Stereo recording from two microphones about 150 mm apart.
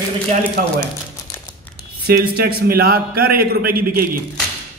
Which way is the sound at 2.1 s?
90° right.